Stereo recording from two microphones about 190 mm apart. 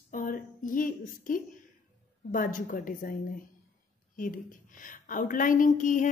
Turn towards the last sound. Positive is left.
turn(degrees=40)  # may be behind; listen again after turning